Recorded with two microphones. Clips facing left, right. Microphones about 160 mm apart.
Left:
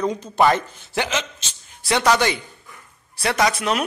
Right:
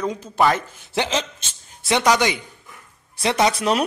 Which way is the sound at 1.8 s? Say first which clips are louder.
Even; 20° right (ahead or behind).